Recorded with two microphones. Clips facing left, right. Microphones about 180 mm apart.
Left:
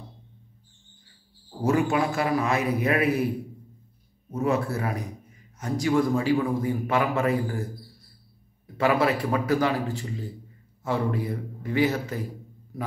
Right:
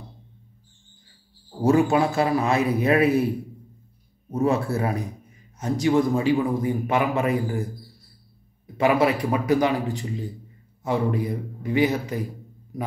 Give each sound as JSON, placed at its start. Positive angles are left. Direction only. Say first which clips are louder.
{"t": 1.6, "sound": "a man's voice", "louder": "right 4 dB", "side_deg": -25}
{"t": 4.3, "sound": "a man's voice", "louder": "right 3 dB", "side_deg": -30}
{"t": 8.7, "sound": "speech", "louder": "right 3 dB", "side_deg": -20}